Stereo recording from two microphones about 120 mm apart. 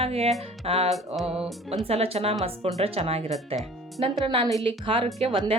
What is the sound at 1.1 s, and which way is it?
Music, 5° right (ahead or behind).